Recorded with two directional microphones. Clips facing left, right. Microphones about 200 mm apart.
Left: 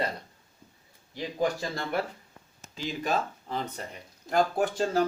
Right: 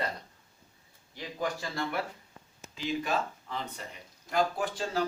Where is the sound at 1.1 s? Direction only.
35° left (ahead or behind).